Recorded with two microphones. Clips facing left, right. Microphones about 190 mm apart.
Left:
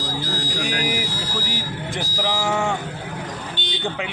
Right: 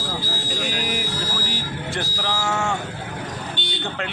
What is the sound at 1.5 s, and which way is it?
Vehicle, 15° left (ahead or behind).